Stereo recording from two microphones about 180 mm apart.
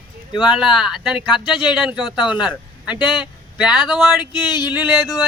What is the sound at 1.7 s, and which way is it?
Speech, 5° right (ahead or behind).